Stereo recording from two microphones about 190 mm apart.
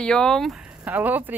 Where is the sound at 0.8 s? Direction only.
10° right (ahead or behind).